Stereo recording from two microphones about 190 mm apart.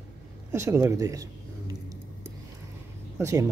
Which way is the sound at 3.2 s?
15° right (ahead or behind).